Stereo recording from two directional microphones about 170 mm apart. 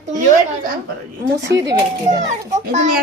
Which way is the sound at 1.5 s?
90° right.